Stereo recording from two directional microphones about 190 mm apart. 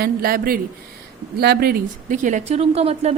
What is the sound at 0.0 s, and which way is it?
Speech, 50° right (ahead or behind).